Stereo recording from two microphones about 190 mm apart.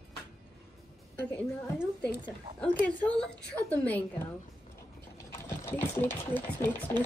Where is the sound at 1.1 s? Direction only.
10° left (ahead or behind).